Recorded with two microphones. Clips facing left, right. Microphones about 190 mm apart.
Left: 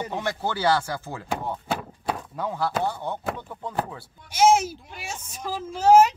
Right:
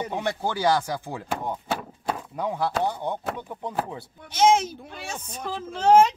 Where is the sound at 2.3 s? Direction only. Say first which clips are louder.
Right 2 dB; 15° right (ahead or behind).